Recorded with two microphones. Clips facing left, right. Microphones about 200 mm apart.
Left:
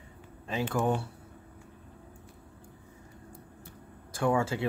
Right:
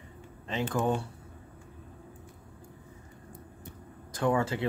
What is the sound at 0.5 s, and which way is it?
Speech, 10° left (ahead or behind).